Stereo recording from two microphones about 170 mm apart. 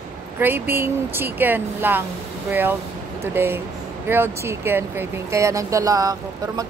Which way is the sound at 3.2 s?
15° right (ahead or behind).